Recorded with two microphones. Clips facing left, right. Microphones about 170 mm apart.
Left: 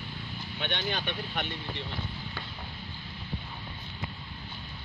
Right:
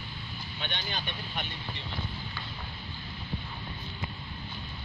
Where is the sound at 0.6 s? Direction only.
65° left (ahead or behind).